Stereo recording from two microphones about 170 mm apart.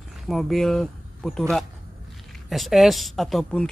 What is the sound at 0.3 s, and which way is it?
Speech, centre (ahead or behind).